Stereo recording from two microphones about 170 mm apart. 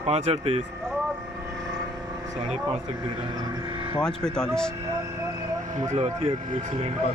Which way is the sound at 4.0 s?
5° left (ahead or behind).